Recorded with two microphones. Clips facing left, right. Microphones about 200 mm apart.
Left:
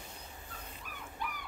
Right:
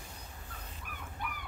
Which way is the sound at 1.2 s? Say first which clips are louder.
Left 1 dB; 55° right (ahead or behind).